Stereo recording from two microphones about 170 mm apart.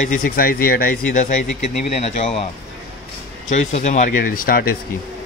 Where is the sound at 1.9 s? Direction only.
40° left (ahead or behind).